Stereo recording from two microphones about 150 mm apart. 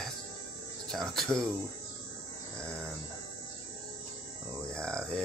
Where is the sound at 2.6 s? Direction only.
5° left (ahead or behind).